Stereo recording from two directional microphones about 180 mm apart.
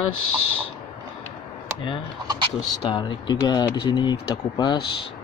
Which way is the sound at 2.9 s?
25° left (ahead or behind).